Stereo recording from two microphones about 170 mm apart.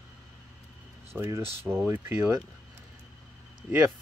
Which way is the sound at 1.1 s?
15° right (ahead or behind).